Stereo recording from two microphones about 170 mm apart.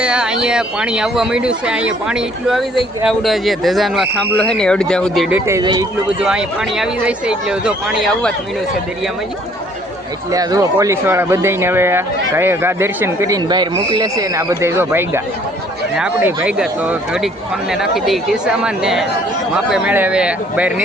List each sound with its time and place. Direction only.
0.0 s speech: 5° right (ahead or behind)
5.3 s speech: 15° right (ahead or behind)
6.2 s speech: 5° right (ahead or behind)
10.3 s speech: 20° right (ahead or behind)